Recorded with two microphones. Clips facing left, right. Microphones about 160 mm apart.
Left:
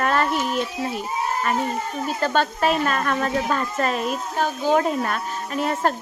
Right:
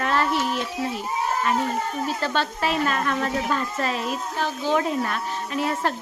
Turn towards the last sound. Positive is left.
turn(degrees=45)  # may be behind; listen again after turning